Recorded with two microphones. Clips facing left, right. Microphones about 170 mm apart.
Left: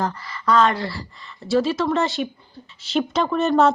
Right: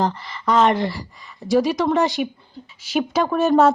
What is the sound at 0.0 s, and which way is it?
Speech, 25° right (ahead or behind).